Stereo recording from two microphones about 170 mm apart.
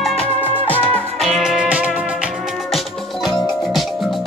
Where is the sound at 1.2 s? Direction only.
Centre (ahead or behind).